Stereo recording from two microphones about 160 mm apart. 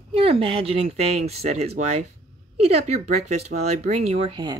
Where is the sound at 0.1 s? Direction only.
35° right (ahead or behind).